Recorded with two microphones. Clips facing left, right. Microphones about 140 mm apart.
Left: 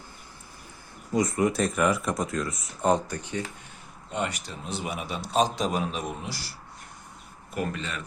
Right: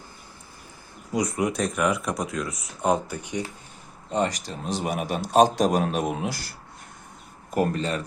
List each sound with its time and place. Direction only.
1.1 s speech: centre (ahead or behind)
4.1 s a man's voice: 35° right (ahead or behind); by 6.6 s 55° right (ahead or behind)
7.5 s speech: 40° right (ahead or behind)